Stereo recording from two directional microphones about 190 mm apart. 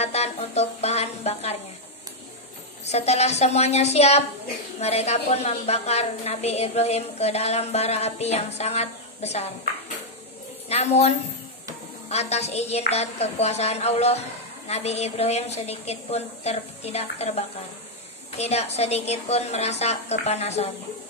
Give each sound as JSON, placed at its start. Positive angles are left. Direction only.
{"t": 0.0, "sound": "music", "side_deg": 35}
{"t": 2.9, "sound": "a woman's voice", "side_deg": 35}
{"t": 10.7, "sound": "a woman's voice", "side_deg": 35}